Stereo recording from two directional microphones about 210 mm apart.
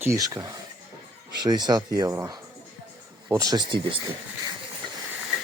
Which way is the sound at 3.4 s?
20° right (ahead or behind).